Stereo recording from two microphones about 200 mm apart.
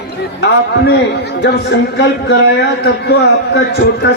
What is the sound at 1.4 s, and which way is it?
Speech, 60° left (ahead or behind).